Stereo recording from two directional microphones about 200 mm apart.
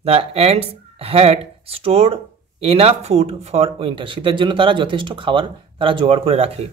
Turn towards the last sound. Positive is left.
turn(degrees=-30)  # may be behind; listen again after turning